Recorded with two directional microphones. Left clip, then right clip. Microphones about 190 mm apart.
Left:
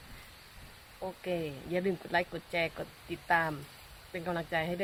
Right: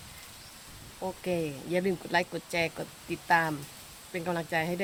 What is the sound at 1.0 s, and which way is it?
Speech, 5° right (ahead or behind).